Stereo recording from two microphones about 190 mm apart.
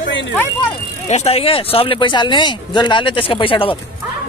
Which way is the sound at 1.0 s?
35° left (ahead or behind).